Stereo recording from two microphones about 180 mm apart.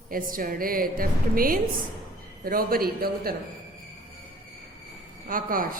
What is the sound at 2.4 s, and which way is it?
Speech, 55° right (ahead or behind).